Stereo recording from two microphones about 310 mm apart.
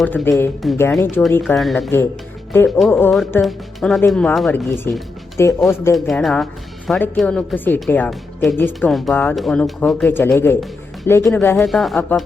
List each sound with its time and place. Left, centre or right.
0.0 s speech: centre